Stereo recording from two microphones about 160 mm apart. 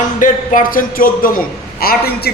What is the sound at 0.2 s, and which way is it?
Speech, 55° left (ahead or behind).